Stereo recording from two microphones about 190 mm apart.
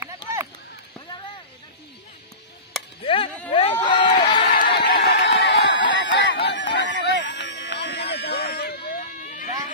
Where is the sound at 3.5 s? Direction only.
30° left (ahead or behind).